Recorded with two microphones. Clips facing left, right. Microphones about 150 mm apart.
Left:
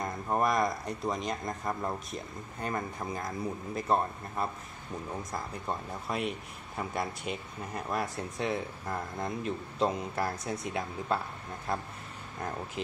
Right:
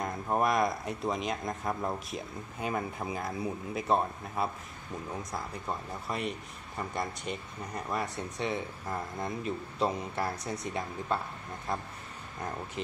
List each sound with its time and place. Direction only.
0.0 s speech: centre (ahead or behind)